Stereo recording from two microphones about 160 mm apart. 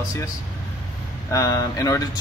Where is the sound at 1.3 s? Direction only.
20° left (ahead or behind).